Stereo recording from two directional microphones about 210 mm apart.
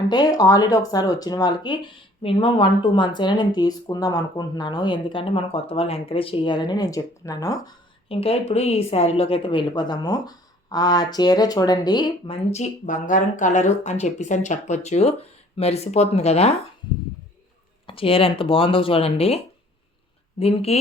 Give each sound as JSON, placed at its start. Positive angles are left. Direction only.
{"t": 0.1, "sound": "speech", "side_deg": 20}
{"t": 8.1, "sound": "speech", "side_deg": 30}
{"t": 17.8, "sound": "speech", "side_deg": 25}
{"t": 20.4, "sound": "speech", "side_deg": 30}